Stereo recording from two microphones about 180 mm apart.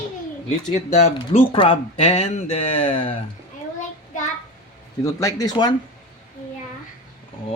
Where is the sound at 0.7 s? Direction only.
35° left (ahead or behind).